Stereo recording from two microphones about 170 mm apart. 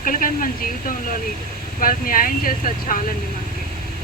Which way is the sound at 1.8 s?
55° left (ahead or behind).